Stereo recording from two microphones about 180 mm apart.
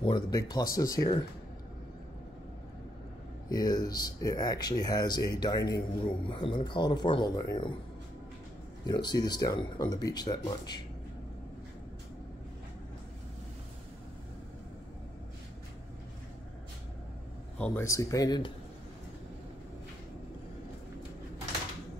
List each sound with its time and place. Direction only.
0.0 s speech: 20° left (ahead or behind)
3.4 s speech: 20° left (ahead or behind)
8.8 s speech: 25° left (ahead or behind)
17.6 s speech: 10° left (ahead or behind)